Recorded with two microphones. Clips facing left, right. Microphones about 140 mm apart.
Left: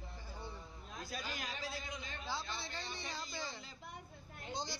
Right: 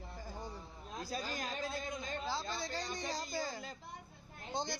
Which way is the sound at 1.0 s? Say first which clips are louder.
Right 4 dB; 40° right (ahead or behind).